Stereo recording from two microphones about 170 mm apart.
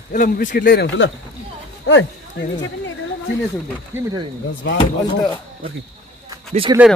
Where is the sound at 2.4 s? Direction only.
70° left (ahead or behind).